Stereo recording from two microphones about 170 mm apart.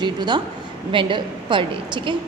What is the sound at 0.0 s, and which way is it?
A woman's voice, 25° right (ahead or behind).